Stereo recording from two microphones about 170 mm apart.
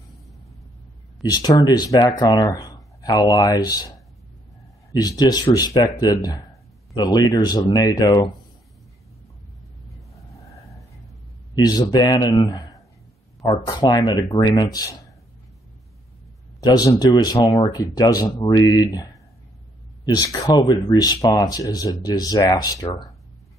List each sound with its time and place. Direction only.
1.2 s speech: 25° left (ahead or behind)
4.9 s speech: 25° left (ahead or behind)
11.5 s a man's voice: 20° left (ahead or behind)
16.6 s speech: 25° left (ahead or behind)
20.2 s speech: 20° left (ahead or behind)